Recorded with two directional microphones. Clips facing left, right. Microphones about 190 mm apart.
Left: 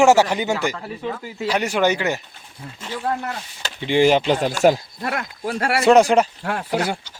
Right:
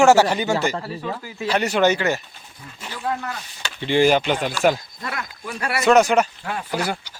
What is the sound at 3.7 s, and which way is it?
Speech, 15° left (ahead or behind).